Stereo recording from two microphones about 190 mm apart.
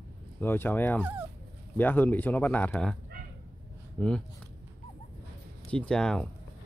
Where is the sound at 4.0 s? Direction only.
5° left (ahead or behind).